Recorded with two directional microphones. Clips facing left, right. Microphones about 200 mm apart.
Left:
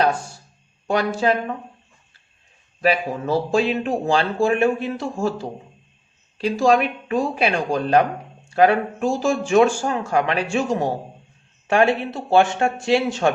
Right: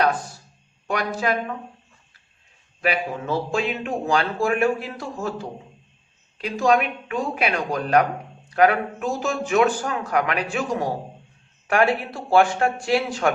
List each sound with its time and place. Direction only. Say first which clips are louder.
0.9 s speech: left 4 dB; 30° left (ahead or behind)
2.8 s speech: left 4 dB; 35° left (ahead or behind)